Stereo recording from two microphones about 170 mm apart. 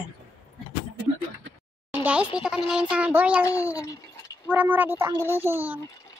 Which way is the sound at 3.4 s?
20° left (ahead or behind).